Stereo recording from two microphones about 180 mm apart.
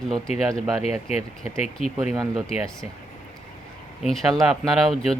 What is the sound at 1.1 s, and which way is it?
Speech, 35° left (ahead or behind).